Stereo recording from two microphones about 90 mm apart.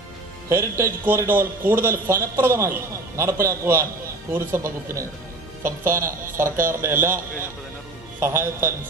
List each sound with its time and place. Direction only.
0.5 s a man's voice: 30° right (ahead or behind)